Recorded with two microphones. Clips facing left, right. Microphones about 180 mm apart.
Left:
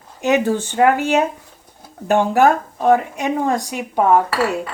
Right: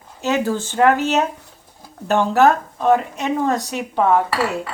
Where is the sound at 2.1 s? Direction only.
15° left (ahead or behind).